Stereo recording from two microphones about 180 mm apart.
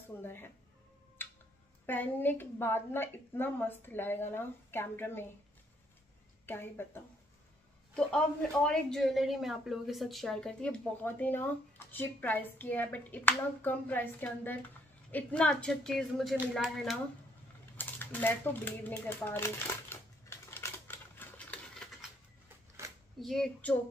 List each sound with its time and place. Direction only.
0.2 s speech: 10° left (ahead or behind)
1.9 s speech: 10° left (ahead or behind)
6.4 s speech: 10° left (ahead or behind)
17.7 s typewriter: 10° left (ahead or behind)
22.8 s a sound: 15° right (ahead or behind)
23.1 s speech: centre (ahead or behind)